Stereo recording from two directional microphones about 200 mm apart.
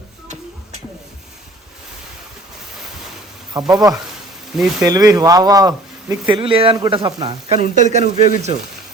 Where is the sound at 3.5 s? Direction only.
20° right (ahead or behind).